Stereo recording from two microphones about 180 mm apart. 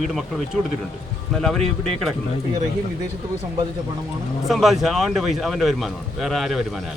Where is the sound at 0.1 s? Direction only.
Centre (ahead or behind).